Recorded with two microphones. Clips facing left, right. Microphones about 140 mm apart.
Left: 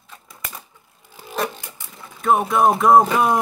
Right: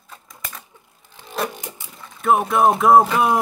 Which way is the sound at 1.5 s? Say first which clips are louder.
Right 4 dB; 20° right (ahead or behind).